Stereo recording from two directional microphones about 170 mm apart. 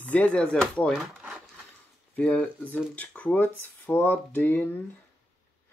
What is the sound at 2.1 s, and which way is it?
Speech, 10° left (ahead or behind).